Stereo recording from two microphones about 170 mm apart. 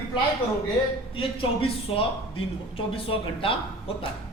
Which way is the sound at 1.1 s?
30° left (ahead or behind).